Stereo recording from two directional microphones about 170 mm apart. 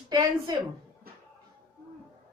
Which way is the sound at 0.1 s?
25° right (ahead or behind).